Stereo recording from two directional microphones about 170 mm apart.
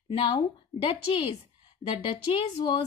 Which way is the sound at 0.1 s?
30° left (ahead or behind).